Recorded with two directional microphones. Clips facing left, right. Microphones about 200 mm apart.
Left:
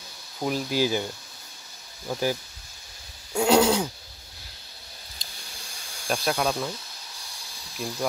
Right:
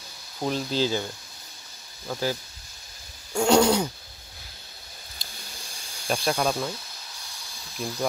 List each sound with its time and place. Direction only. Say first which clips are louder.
0.4 s speech: left 1 dB; 5° left (ahead or behind)
2.0 s speech: left 2 dB; 15° left (ahead or behind)
3.3 s speech: even; 5° left (ahead or behind)
6.0 s speech: right 1 dB; centre (ahead or behind)